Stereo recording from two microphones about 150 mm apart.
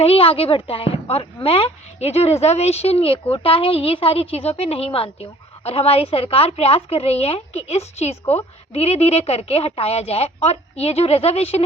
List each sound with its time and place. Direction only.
0.0 s a woman's voice: 40° left (ahead or behind)